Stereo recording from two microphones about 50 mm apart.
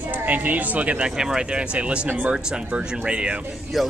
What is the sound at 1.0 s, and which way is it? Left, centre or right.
Speech, centre.